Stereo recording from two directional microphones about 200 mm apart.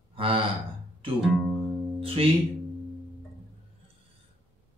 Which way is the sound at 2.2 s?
30° right (ahead or behind).